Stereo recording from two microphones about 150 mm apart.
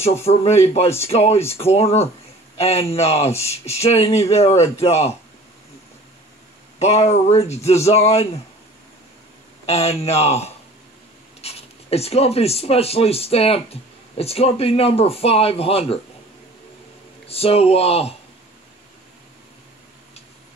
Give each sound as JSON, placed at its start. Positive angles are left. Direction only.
{"t": 0.0, "sound": "speech", "side_deg": 45}
{"t": 6.8, "sound": "speech", "side_deg": 45}
{"t": 9.7, "sound": "speech", "side_deg": 45}
{"t": 17.3, "sound": "speech", "side_deg": 40}